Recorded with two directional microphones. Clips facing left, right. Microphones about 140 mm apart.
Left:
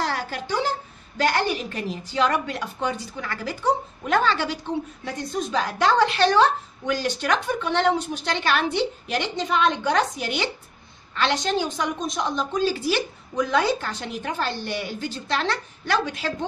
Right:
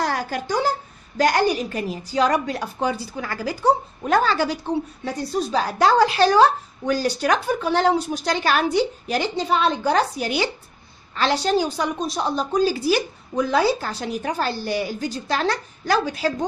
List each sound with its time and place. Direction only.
0.0 s a woman's voice: 45° right (ahead or behind)